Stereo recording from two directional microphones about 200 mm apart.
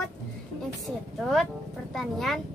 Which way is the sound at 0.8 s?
Centre (ahead or behind).